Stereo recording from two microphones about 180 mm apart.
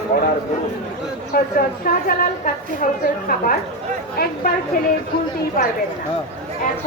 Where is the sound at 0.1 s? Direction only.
55° left (ahead or behind).